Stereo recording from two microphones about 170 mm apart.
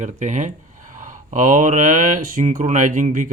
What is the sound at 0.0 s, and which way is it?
Speech, 45° right (ahead or behind).